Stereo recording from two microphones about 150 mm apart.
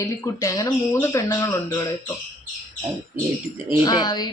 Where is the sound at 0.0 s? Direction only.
20° left (ahead or behind).